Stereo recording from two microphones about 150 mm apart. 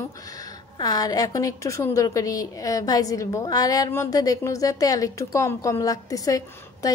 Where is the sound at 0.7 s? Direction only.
25° left (ahead or behind).